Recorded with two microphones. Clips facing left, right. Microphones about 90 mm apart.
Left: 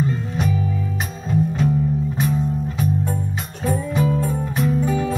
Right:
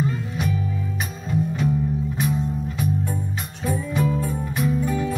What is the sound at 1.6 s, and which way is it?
Music, 5° right (ahead or behind).